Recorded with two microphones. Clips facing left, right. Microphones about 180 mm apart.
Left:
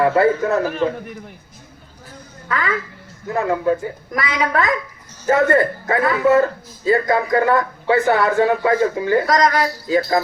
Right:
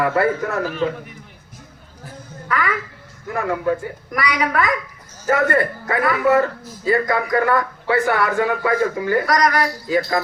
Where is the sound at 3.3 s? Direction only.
25° left (ahead or behind).